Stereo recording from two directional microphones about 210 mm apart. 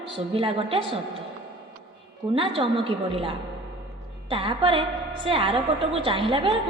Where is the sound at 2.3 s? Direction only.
25° right (ahead or behind).